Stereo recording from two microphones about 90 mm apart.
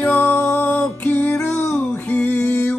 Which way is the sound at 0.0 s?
20° left (ahead or behind).